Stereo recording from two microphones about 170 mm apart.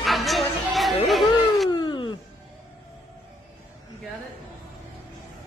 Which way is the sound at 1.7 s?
25° left (ahead or behind).